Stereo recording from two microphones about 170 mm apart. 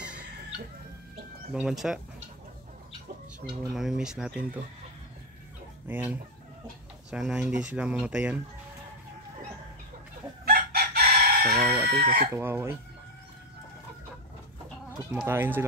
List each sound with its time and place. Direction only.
1.5 s speech: 5° right (ahead or behind)
3.4 s speech: centre (ahead or behind)
5.9 s speech: 10° right (ahead or behind)
10.4 s chicken: 65° right (ahead or behind)
11.8 s speech: 65° right (ahead or behind)
12.4 s speech: 15° right (ahead or behind)
15.0 s speech: 10° right (ahead or behind)